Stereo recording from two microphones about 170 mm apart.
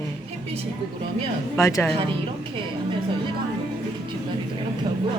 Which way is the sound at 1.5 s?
15° left (ahead or behind).